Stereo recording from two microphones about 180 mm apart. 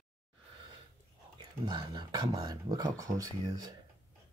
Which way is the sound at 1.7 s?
25° right (ahead or behind).